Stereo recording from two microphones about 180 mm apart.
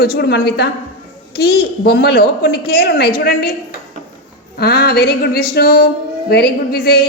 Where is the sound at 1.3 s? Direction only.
65° left (ahead or behind).